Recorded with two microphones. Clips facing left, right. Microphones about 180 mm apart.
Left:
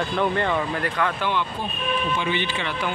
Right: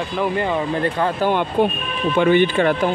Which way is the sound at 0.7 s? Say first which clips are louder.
Right 5 dB; 30° right (ahead or behind).